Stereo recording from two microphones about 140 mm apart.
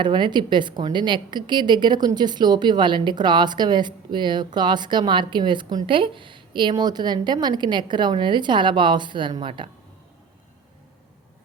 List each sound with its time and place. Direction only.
0.0 s a woman's voice: 35° right (ahead or behind)